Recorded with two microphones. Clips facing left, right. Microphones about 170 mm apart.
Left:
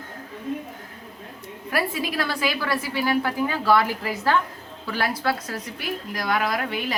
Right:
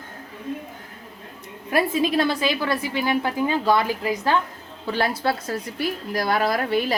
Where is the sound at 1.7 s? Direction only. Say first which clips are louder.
Right 5 dB; 20° right (ahead or behind).